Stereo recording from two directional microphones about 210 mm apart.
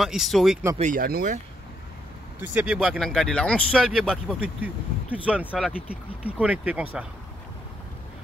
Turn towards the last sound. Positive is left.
turn(degrees=-5)  # may be behind; listen again after turning